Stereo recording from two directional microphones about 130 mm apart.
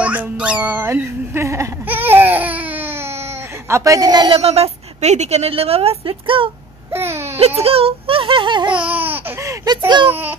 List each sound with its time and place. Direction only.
0.0 s a sound: 10° right (ahead or behind)
3.6 s speech: 25° right (ahead or behind)
4.3 s a woman's voice: 50° right (ahead or behind)
6.9 s a sound: 20° right (ahead or behind)
7.3 s a woman's voice: 50° right (ahead or behind)
8.7 s speech: 10° right (ahead or behind); by 10.1 s 35° right (ahead or behind)